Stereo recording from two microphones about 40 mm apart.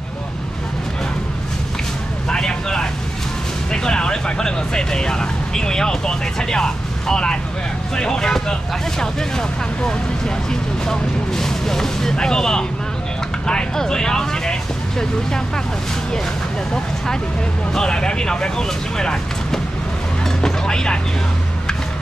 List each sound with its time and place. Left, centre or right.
2.2 s vehicle: centre
3.7 s speech: centre
9.8 s speech: centre
13.7 s speech: centre
17.7 s speech: centre
20.4 s vehicle: centre